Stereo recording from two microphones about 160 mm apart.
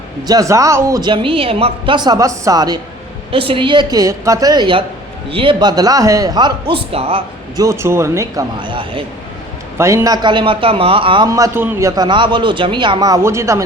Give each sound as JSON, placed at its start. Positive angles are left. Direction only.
{"t": 0.3, "sound": "a woman's voice", "side_deg": -20}
{"t": 3.3, "sound": "a woman's voice", "side_deg": -35}
{"t": 7.5, "sound": "a woman's voice", "side_deg": -20}
{"t": 9.7, "sound": "a man's voice", "side_deg": -20}
{"t": 11.3, "sound": "a woman's voice", "side_deg": -20}